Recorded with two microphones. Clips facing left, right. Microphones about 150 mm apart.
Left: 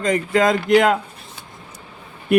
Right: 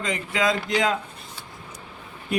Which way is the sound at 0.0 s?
50° left (ahead or behind).